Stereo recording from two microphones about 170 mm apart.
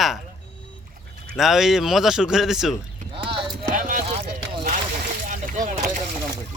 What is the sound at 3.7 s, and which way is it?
Vehicle, 55° right (ahead or behind).